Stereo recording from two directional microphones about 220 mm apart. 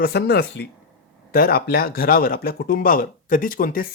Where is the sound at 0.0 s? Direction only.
45° left (ahead or behind).